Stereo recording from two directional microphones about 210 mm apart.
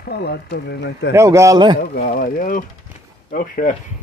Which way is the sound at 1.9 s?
40° left (ahead or behind).